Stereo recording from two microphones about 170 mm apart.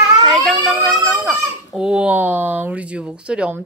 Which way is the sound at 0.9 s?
20° right (ahead or behind).